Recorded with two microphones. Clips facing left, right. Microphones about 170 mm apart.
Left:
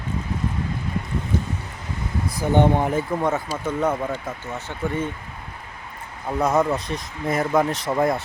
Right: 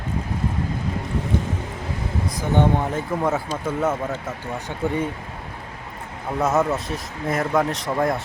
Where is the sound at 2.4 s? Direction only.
10° left (ahead or behind).